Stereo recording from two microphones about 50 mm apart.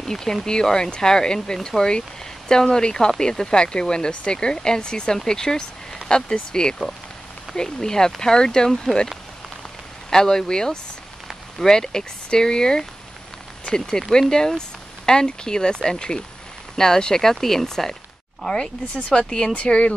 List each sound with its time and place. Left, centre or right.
0.0 s speech: centre
10.0 s speech: centre